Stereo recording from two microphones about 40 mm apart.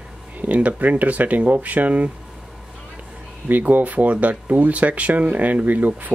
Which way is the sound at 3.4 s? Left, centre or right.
Right.